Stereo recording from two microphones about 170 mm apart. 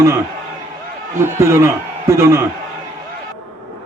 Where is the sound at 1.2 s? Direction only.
15° right (ahead or behind).